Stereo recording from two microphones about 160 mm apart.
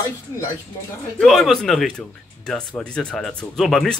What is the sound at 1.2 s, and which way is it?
Speech, centre (ahead or behind).